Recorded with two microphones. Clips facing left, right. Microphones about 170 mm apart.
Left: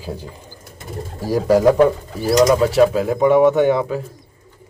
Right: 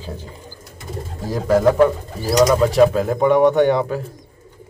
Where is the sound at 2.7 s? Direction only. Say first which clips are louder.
Even; 5° left (ahead or behind).